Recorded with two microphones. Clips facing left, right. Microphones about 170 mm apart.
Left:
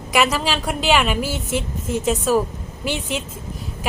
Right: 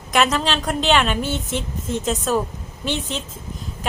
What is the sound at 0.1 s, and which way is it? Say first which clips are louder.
A woman's voice: even; 5° left (ahead or behind).